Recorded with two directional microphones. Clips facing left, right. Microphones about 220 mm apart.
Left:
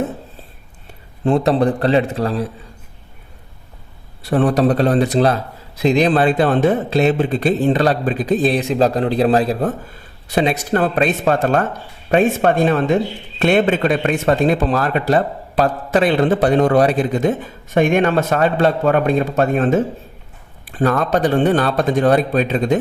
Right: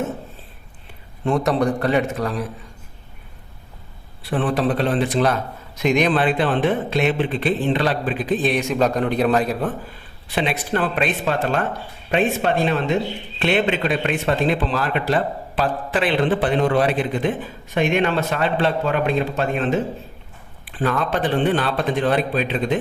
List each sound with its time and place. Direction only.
1.2 s a man's voice: 35° left (ahead or behind)
4.2 s a man's voice: 40° left (ahead or behind)